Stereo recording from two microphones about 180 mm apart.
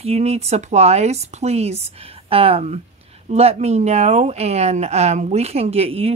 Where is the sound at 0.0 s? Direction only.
35° right (ahead or behind).